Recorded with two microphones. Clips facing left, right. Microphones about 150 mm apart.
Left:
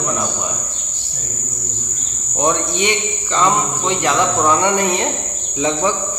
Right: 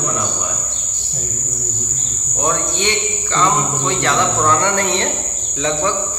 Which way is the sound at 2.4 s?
15° left (ahead or behind).